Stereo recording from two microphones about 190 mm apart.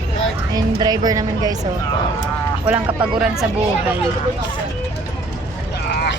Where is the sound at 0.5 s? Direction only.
20° right (ahead or behind).